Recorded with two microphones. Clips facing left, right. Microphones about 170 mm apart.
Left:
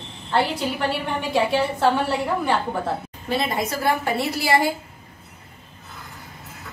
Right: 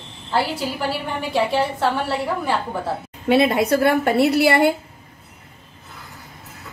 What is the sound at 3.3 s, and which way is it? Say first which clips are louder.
A woman's voice: right 8 dB; 65° right (ahead or behind).